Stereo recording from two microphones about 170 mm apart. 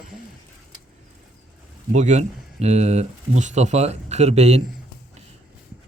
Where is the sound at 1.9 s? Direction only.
45° right (ahead or behind).